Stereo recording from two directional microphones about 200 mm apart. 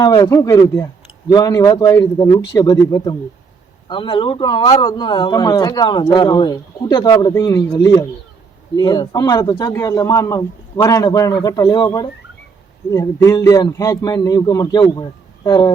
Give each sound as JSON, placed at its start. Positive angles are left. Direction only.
{"t": 0.0, "sound": "a man's voice", "side_deg": 20}